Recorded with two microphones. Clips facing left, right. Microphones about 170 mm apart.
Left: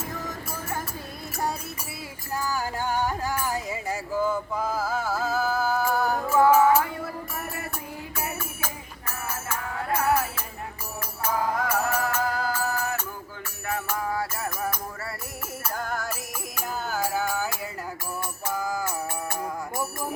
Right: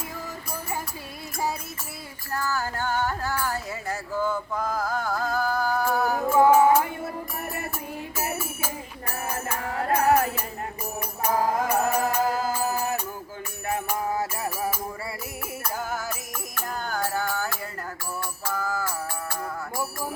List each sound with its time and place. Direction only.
2.3 s a sound: 15° left (ahead or behind)
6.5 s music: 25° right (ahead or behind)
8.1 s music: 10° right (ahead or behind)
9.8 s music: 40° right (ahead or behind)
11.5 s music: 20° right (ahead or behind); by 19.8 s 20° left (ahead or behind)